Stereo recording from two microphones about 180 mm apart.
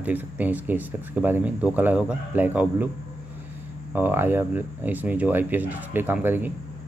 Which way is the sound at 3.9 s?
10° right (ahead or behind).